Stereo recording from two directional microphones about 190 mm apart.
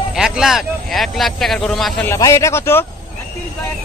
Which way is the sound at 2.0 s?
15° left (ahead or behind).